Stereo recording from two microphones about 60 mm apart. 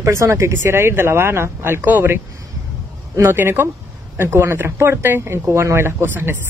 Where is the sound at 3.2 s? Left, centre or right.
Right.